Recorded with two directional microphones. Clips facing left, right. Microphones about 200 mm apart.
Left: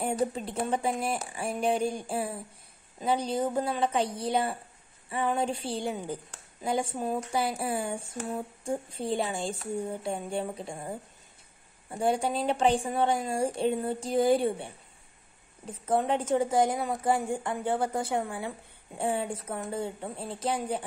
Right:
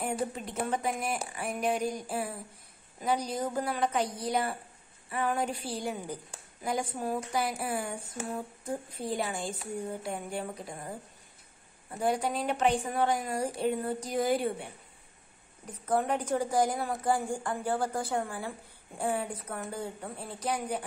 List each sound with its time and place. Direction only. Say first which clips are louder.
0.0 s a woman's voice: left 4 dB; 30° left (ahead or behind)